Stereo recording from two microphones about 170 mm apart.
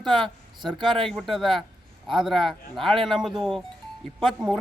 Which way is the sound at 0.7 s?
30° right (ahead or behind).